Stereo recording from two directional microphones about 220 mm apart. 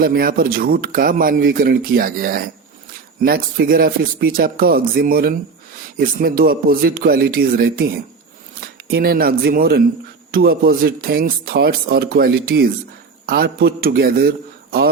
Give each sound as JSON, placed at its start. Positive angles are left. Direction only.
{"t": 0.0, "sound": "speech", "side_deg": -40}